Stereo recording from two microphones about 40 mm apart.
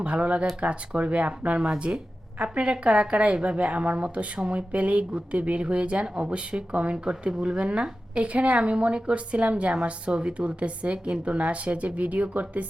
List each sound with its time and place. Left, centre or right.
0.0 s a woman's voice: right